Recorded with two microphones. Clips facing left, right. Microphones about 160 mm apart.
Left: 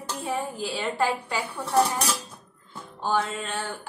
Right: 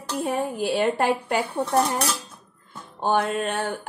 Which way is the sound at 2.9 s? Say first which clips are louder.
Right 4 dB; 55° right (ahead or behind).